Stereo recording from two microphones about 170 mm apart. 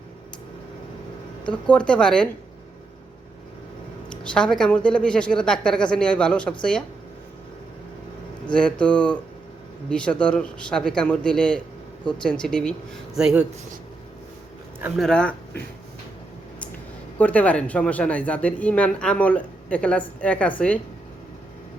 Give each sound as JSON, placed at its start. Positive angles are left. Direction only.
{"t": 1.5, "sound": "speech", "side_deg": 5}
{"t": 4.1, "sound": "speech", "side_deg": 5}
{"t": 8.5, "sound": "speech", "side_deg": 5}
{"t": 14.9, "sound": "speech", "side_deg": 5}
{"t": 17.2, "sound": "speech", "side_deg": 10}